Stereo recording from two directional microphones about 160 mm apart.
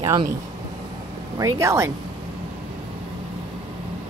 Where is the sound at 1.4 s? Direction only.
20° right (ahead or behind).